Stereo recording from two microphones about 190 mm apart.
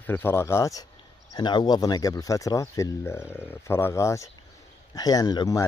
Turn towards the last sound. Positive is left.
turn(degrees=20)  # may be behind; listen again after turning